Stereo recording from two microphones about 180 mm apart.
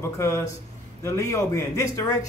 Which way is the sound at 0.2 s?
15° left (ahead or behind).